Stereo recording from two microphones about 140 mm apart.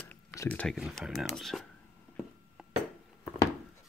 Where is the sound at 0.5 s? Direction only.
10° left (ahead or behind).